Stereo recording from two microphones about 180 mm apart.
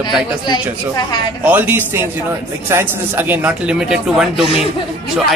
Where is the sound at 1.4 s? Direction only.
10° right (ahead or behind).